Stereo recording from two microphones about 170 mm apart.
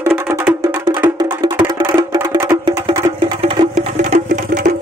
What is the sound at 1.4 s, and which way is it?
Wood block, 20° right (ahead or behind).